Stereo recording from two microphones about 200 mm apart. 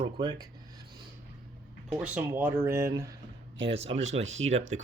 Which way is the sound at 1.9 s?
5° right (ahead or behind).